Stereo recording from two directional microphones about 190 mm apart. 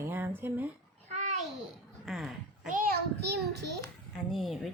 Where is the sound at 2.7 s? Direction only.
50° right (ahead or behind).